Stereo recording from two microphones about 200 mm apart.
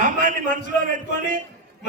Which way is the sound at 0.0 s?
40° right (ahead or behind).